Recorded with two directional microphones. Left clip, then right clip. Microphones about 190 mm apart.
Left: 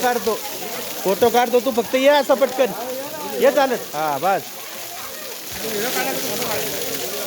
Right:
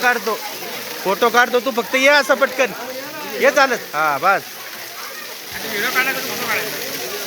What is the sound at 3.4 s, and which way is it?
Speech, 15° left (ahead or behind).